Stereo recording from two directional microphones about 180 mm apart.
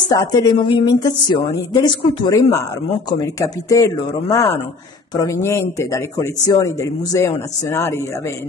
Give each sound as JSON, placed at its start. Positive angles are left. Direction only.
{"t": 0.0, "sound": "a woman's voice", "side_deg": 20}